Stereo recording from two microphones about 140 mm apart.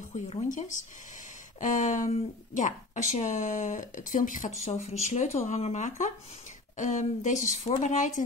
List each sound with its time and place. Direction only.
0.3 s speech: 60° left (ahead or behind)
4.6 s speech: 55° left (ahead or behind)